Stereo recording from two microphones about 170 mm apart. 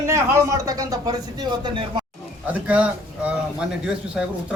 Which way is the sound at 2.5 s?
10° right (ahead or behind).